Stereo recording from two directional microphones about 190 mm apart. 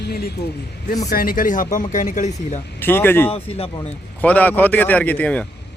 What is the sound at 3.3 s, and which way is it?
Speech, 30° left (ahead or behind).